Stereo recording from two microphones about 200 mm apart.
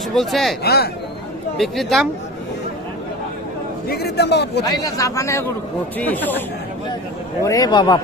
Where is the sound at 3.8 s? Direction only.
55° left (ahead or behind).